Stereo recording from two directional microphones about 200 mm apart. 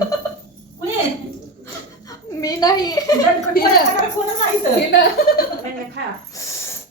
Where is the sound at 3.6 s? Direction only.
45° left (ahead or behind).